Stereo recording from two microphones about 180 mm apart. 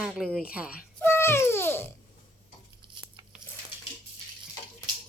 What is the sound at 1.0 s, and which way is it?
Babbling, 15° left (ahead or behind).